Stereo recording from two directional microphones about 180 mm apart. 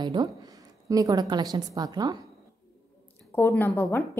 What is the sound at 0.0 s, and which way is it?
A woman's voice, 20° right (ahead or behind).